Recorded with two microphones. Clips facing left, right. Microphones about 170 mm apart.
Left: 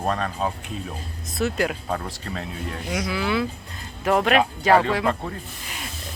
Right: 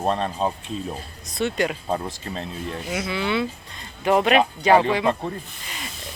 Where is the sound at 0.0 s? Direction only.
25° right (ahead or behind).